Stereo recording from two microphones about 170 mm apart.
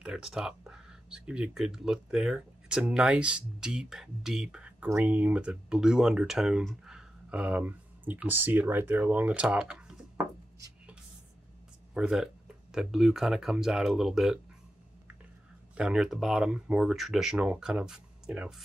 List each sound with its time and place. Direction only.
0.0 s speech: 5° right (ahead or behind)
11.9 s speech: 5° right (ahead or behind)
15.7 s speech: 5° right (ahead or behind)